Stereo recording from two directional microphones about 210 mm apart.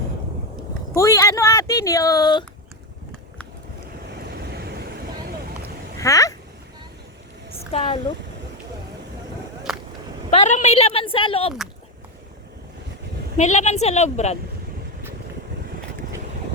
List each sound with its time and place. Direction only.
0.9 s speech: 15° left (ahead or behind)
4.3 s vehicle: 50° right (ahead or behind)
6.0 s speech: 15° left (ahead or behind)
7.5 s a woman's voice: 30° left (ahead or behind)
9.7 s a sound: centre (ahead or behind)
10.3 s a woman's voice: 35° left (ahead or behind)
13.3 s a woman's voice: 35° left (ahead or behind)